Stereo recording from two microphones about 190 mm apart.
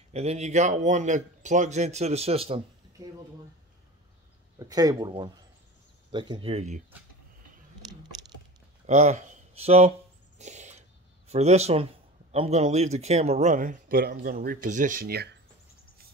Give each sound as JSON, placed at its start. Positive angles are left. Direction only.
{"t": 0.1, "sound": "a man's voice", "side_deg": -35}
{"t": 4.6, "sound": "speech", "side_deg": -20}
{"t": 8.8, "sound": "speech", "side_deg": -40}
{"t": 10.4, "sound": "a sound", "side_deg": -35}
{"t": 11.2, "sound": "a man's voice", "side_deg": -35}